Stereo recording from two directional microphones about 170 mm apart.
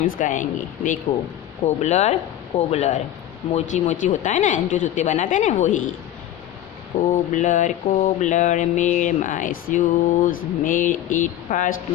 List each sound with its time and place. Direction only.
0.0 s mantra: 50° left (ahead or behind)
1.8 s speech: 40° left (ahead or behind)
2.7 s mantra: 40° left (ahead or behind)
6.9 s mantra: 45° left (ahead or behind)